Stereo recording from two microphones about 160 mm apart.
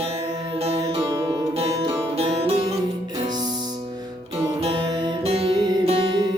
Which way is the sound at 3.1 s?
25° right (ahead or behind).